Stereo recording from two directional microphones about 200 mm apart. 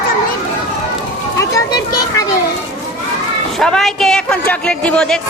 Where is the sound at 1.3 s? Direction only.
15° left (ahead or behind).